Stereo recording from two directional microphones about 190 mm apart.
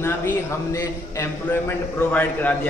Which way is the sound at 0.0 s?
15° left (ahead or behind).